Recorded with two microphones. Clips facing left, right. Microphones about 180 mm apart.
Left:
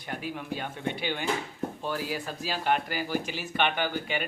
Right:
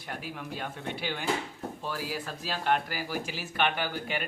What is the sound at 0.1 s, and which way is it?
Speech, centre (ahead or behind).